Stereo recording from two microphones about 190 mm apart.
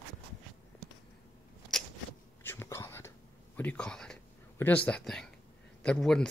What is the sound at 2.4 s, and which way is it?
Whispering, 10° left (ahead or behind).